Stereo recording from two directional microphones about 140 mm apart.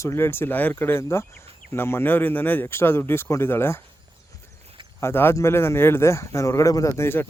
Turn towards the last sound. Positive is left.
turn(degrees=15)  # may be behind; listen again after turning